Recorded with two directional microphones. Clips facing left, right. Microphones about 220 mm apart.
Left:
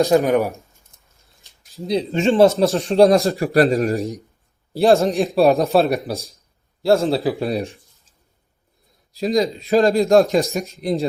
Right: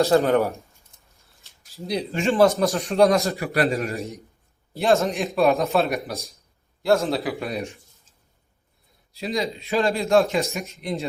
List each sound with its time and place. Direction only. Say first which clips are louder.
0.0 s speech: left 2 dB; 15° left (ahead or behind)
1.9 s a man's voice: left 5 dB; 25° left (ahead or behind)
9.1 s a man's voice: left 7 dB; 40° left (ahead or behind)